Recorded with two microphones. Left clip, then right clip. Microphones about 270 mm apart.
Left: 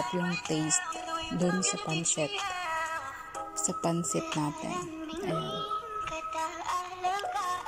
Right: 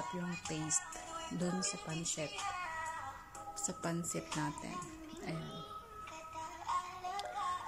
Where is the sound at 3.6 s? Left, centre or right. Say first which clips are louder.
Left 10 dB; centre.